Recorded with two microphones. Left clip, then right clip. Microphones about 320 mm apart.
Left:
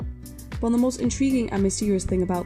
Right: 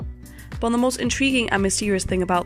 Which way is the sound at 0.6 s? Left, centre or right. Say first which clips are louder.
Right 3 dB; right.